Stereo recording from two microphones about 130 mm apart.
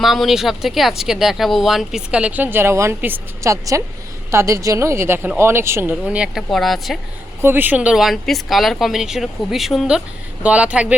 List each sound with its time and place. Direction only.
0.0 s speech: centre (ahead or behind)
7.4 s speech: 15° right (ahead or behind)